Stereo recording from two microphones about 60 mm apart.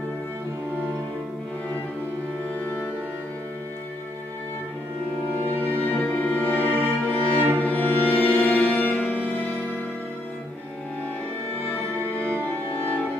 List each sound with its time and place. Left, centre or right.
2.6 s music: left
5.6 s music: left
11.7 s music: left